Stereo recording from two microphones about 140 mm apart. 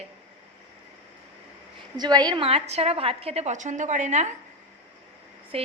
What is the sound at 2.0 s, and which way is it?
A woman's voice, 30° right (ahead or behind).